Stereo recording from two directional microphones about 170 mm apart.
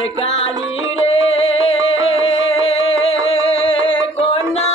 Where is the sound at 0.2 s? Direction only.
35° left (ahead or behind).